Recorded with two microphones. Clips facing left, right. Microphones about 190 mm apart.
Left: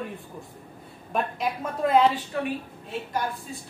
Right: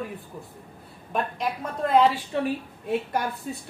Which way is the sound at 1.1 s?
Centre (ahead or behind).